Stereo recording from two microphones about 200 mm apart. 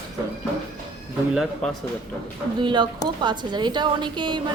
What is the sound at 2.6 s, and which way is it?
A woman's voice, 25° right (ahead or behind).